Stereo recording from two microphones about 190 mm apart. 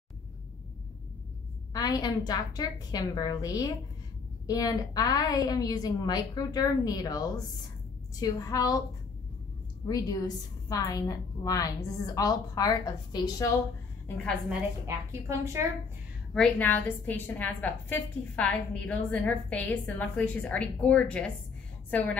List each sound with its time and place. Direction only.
1.7 s a woman's voice: 20° left (ahead or behind)
9.8 s a woman's voice: 20° left (ahead or behind)
14.0 s a woman's voice: 5° left (ahead or behind)
15.2 s a woman's voice: 15° right (ahead or behind)
16.3 s a woman's voice: 10° left (ahead or behind)